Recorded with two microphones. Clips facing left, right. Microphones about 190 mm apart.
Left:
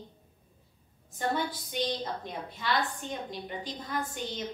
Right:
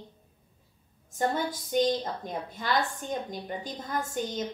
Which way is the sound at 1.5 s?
45° right (ahead or behind).